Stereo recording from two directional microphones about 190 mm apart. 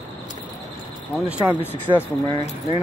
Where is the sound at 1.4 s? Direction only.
5° right (ahead or behind).